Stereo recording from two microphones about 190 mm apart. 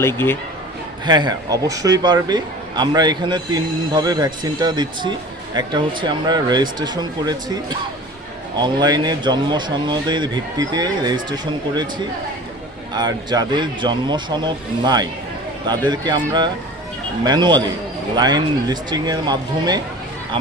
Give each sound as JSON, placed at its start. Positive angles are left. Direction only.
{"t": 0.0, "sound": "a man's voice", "side_deg": 10}
{"t": 1.0, "sound": "speech", "side_deg": -20}